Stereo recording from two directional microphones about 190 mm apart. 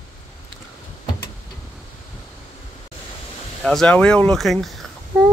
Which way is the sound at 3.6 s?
5° left (ahead or behind).